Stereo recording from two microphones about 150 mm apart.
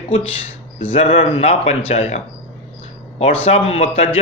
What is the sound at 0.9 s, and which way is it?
A man's voice, 40° left (ahead or behind).